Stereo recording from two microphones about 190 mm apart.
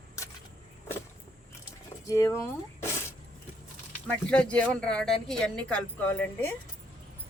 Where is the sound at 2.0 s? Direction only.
15° left (ahead or behind).